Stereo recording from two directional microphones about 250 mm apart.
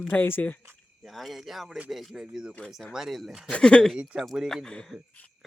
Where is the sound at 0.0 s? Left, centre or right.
Centre.